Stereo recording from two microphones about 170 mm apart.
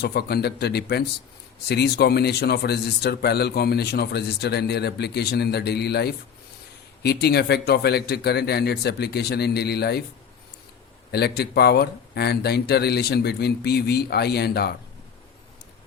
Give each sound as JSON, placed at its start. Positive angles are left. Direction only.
{"t": 0.0, "sound": "a man's voice", "side_deg": 70}
{"t": 11.1, "sound": "a man's voice", "side_deg": 70}